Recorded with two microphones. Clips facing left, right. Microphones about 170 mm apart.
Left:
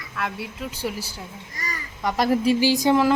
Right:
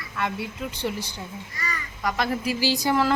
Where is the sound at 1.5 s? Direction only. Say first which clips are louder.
Left 1 dB; 40° left (ahead or behind).